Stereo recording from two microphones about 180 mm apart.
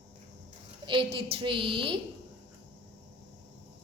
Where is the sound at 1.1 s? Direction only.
30° right (ahead or behind).